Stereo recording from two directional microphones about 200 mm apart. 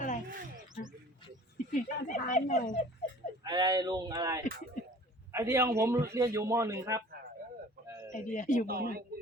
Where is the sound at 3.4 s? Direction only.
20° right (ahead or behind).